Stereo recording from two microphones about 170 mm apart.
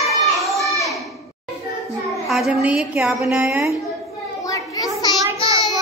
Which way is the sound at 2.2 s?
Centre (ahead or behind).